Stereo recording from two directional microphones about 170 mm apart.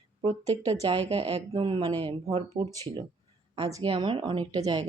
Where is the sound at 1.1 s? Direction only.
35° right (ahead or behind).